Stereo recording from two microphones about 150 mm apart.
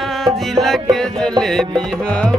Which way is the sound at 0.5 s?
Centre (ahead or behind).